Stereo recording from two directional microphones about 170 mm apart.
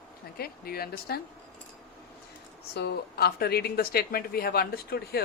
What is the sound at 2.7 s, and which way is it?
Speech, 70° left (ahead or behind).